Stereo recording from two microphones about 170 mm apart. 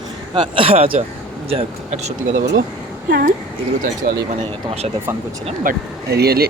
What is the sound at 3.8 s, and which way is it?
Speech, 65° right (ahead or behind).